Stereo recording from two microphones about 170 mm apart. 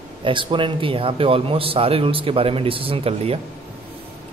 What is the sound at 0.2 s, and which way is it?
A man's voice, 30° right (ahead or behind).